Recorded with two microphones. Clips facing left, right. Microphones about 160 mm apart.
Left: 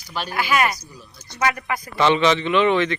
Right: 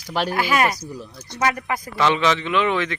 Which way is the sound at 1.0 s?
75° right (ahead or behind).